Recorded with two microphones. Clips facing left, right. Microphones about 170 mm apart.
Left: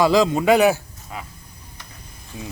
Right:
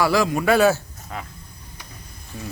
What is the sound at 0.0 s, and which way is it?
Speech, 20° left (ahead or behind).